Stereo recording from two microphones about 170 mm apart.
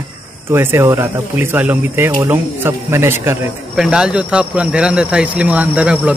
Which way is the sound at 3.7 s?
5° right (ahead or behind).